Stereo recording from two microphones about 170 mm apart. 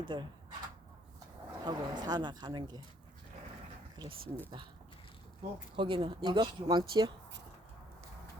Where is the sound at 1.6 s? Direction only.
25° right (ahead or behind).